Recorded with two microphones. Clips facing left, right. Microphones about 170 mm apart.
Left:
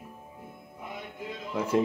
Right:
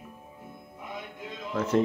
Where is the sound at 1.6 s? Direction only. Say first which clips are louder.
Right 1 dB; 10° left (ahead or behind).